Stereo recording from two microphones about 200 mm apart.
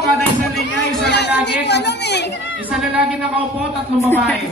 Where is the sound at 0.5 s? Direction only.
55° left (ahead or behind).